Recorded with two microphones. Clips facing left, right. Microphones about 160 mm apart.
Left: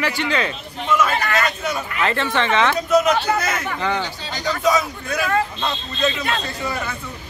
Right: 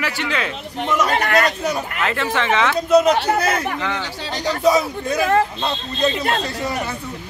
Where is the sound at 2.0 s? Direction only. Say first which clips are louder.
Left 2 dB; 5° right (ahead or behind).